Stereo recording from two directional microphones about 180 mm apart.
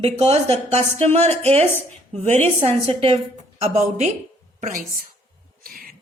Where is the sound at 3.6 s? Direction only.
40° right (ahead or behind).